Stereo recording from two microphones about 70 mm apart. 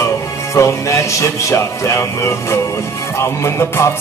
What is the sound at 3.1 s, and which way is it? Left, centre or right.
Speech, left.